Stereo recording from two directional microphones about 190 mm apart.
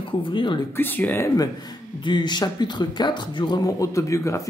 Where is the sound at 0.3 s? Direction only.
25° left (ahead or behind).